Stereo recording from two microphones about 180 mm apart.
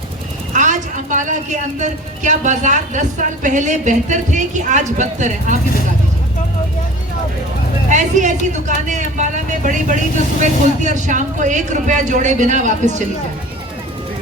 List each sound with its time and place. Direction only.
0.5 s a woman's voice: 45° right (ahead or behind)
7.9 s a woman's voice: 45° right (ahead or behind)